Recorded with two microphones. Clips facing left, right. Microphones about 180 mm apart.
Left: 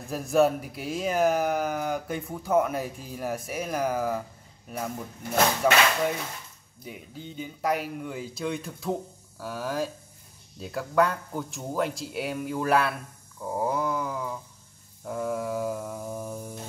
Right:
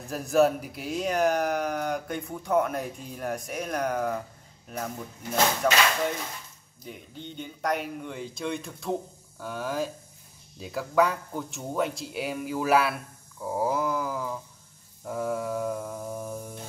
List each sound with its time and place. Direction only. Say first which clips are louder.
0.0 s speech: even; centre (ahead or behind)
13.4 s a sound: right 1 dB; centre (ahead or behind)
15.0 s mantra: even; centre (ahead or behind)